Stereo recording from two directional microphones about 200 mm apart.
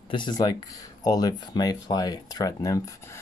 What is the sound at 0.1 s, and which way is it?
Speech, 20° left (ahead or behind).